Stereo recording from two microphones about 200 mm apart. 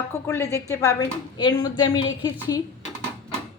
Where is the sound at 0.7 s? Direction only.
15° left (ahead or behind).